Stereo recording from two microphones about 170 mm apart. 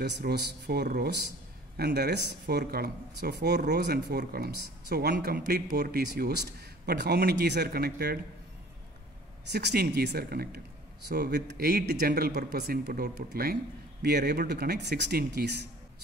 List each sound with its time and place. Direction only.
0.0 s speech: 75° right (ahead or behind)
9.5 s speech: 75° right (ahead or behind)
14.0 s speech: 75° right (ahead or behind)